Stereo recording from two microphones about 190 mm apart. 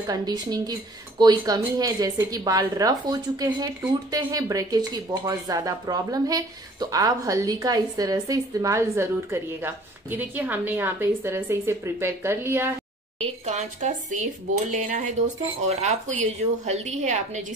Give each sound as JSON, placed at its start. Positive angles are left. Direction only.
{"t": 0.0, "sound": "a woman's voice", "side_deg": -20}
{"t": 13.2, "sound": "speech", "side_deg": -35}